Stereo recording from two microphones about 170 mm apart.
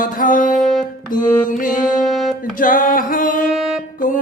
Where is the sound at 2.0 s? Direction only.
Centre (ahead or behind).